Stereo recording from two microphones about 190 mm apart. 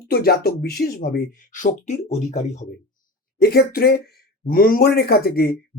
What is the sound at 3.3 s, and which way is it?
Speech, 55° left (ahead or behind).